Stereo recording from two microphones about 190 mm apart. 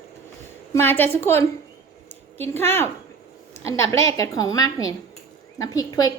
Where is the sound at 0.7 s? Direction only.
10° left (ahead or behind).